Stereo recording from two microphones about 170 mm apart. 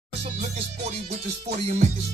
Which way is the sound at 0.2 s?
40° right (ahead or behind).